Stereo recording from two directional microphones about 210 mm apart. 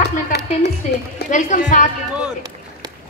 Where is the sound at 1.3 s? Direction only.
35° left (ahead or behind).